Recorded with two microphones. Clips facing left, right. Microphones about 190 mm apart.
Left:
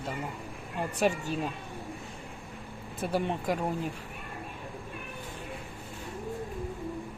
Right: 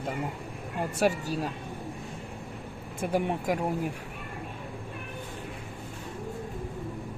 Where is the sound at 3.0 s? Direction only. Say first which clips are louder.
Right 2 dB; 10° right (ahead or behind).